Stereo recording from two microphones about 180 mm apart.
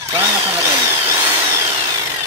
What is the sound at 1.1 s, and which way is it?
Tools, 15° right (ahead or behind).